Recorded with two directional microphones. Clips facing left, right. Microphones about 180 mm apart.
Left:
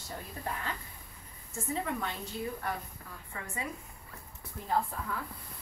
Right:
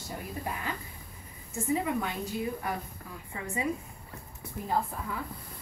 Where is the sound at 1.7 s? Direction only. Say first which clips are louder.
Right 3 dB; 10° right (ahead or behind).